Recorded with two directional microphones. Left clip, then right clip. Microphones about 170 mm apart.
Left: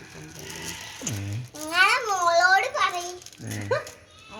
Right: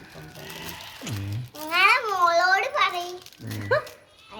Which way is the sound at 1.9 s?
20° right (ahead or behind).